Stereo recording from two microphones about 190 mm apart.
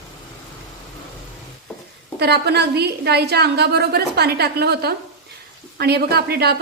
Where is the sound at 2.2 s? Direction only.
60° right (ahead or behind).